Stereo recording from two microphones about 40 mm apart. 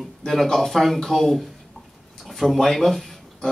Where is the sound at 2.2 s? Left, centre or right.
Centre.